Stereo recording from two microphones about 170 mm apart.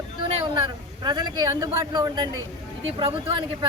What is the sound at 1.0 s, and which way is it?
Speech, 25° right (ahead or behind).